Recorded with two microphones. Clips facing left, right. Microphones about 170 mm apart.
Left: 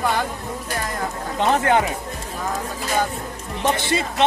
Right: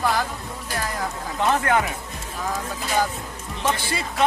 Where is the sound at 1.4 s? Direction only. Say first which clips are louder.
Left 3 dB; 20° left (ahead or behind).